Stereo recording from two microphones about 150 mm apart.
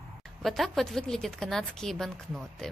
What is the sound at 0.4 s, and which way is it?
A woman's voice, centre (ahead or behind).